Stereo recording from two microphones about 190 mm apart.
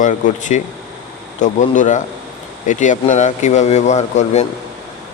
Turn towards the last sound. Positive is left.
turn(degrees=35)  # may be behind; listen again after turning